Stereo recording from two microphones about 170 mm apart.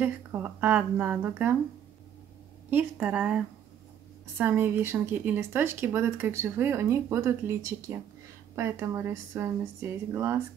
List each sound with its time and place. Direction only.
0.0 s speech: 10° right (ahead or behind)
2.7 s speech: 10° right (ahead or behind)